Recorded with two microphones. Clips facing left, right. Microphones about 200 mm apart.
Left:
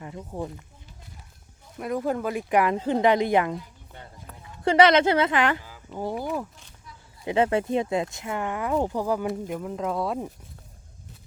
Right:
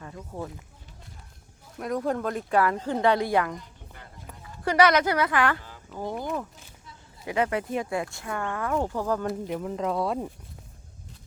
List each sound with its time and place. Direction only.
0.0 s speech: 15° left (ahead or behind)
1.8 s speech: 5° left (ahead or behind)
2.5 s speech: 15° left (ahead or behind)
4.6 s speech: 25° left (ahead or behind)
5.6 s a sound: 5° left (ahead or behind)
7.3 s speech: 25° left (ahead or behind)
9.2 s speech: centre (ahead or behind)